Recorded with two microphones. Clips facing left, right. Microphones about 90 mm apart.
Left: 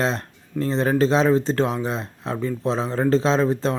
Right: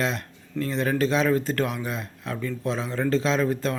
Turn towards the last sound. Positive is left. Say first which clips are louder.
# left 4 dB
turn(degrees=25)  # may be behind; listen again after turning